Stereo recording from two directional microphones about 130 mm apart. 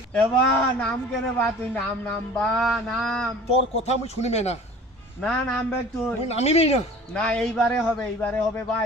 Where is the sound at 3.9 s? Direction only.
55° left (ahead or behind).